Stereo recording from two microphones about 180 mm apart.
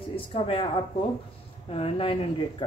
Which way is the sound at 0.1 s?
30° left (ahead or behind).